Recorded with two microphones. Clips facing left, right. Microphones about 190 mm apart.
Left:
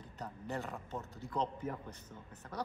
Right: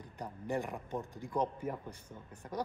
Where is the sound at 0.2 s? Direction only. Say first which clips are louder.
Right 4 dB; 15° right (ahead or behind).